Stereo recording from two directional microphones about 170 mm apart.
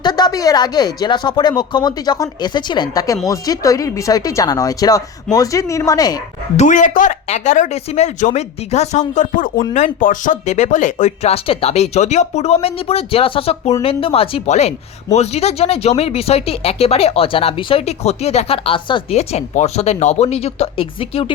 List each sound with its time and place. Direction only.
0.0 s speech: 25° left (ahead or behind)
6.6 s speech: 45° left (ahead or behind)